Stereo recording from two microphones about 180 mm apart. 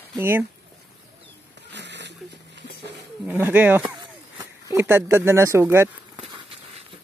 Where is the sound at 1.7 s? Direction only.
75° right (ahead or behind).